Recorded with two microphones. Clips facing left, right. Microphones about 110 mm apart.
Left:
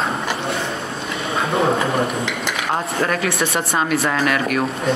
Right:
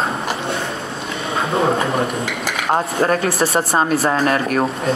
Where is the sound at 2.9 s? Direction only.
35° right (ahead or behind).